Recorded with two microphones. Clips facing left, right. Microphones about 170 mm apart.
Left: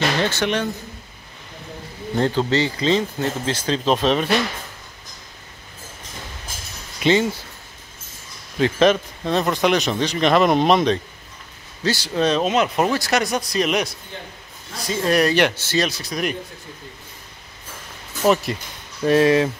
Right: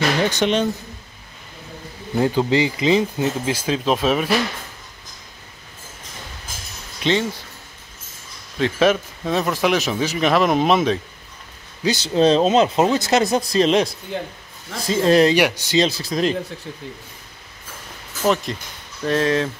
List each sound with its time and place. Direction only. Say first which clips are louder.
0.2 s speech: right 3 dB; 15° right (ahead or behind)
2.1 s speech: right 2 dB; 10° right (ahead or behind)
7.0 s speech: left 3 dB; 5° left (ahead or behind)
8.5 s a man's voice: left 1 dB; centre (ahead or behind)
11.8 s speech: right 4 dB; 20° right (ahead or behind)
14.9 s speech: right 4 dB; 25° right (ahead or behind)
15.3 s speech: right 2 dB; 10° right (ahead or behind)
16.0 s speech: right 4 dB; 25° right (ahead or behind)
18.2 s a man's voice: left 2 dB; 5° left (ahead or behind)